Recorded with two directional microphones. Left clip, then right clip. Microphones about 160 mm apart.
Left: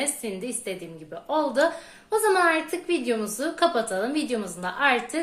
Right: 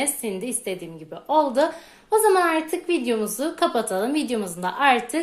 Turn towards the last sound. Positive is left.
turn(degrees=-40)  # may be behind; listen again after turning